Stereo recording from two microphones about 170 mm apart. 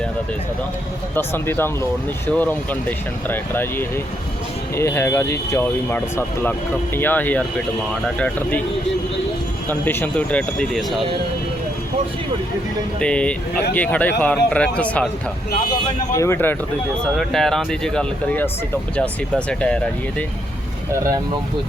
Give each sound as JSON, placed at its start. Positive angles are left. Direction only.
{"t": 1.1, "sound": "speech", "side_deg": 15}
{"t": 9.6, "sound": "speech", "side_deg": 10}
{"t": 13.0, "sound": "speech", "side_deg": 5}
{"t": 16.1, "sound": "speech", "side_deg": 15}
{"t": 17.2, "sound": "speech", "side_deg": 0}
{"t": 19.5, "sound": "speech", "side_deg": 5}